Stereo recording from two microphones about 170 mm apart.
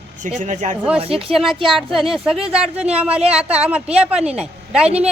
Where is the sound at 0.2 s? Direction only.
45° right (ahead or behind).